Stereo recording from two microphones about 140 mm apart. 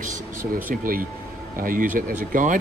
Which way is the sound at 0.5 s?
85° right.